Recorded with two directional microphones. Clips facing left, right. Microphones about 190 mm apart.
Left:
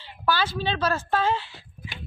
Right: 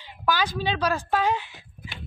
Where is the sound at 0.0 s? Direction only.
15° right (ahead or behind).